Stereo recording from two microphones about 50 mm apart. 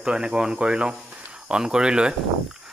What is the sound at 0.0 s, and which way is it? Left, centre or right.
Speech, centre.